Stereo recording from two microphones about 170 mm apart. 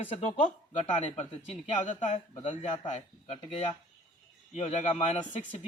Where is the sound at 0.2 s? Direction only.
40° left (ahead or behind).